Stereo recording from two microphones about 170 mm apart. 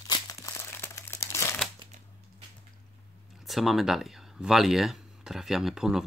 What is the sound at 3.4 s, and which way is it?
Speech, centre (ahead or behind).